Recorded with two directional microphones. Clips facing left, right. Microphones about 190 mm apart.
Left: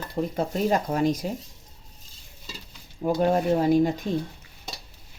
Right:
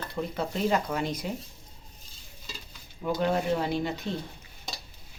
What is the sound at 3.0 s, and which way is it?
Speech, 40° left (ahead or behind).